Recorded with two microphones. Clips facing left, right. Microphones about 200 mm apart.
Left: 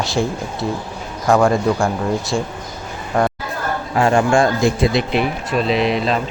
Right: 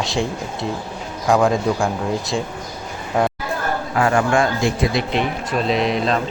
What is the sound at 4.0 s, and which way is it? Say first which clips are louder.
A man's voice: left 3 dB; 25° left (ahead or behind).